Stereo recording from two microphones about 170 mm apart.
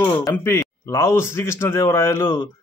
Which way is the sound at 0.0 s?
15° left (ahead or behind).